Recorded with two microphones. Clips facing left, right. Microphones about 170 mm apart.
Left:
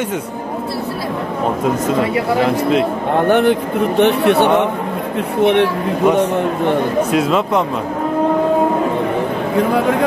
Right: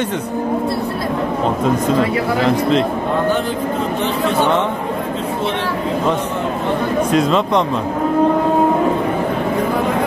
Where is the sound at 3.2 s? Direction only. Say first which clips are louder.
Left 5 dB; 65° left (ahead or behind).